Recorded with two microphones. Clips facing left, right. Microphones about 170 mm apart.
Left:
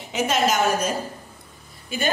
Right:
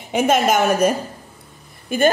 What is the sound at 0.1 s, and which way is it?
A woman's voice, 55° right (ahead or behind).